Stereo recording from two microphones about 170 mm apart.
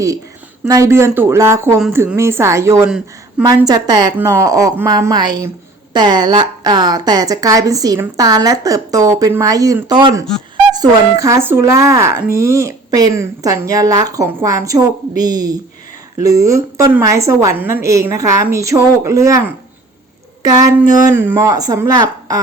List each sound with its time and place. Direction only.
0.7 s a woman's voice: 15° right (ahead or behind)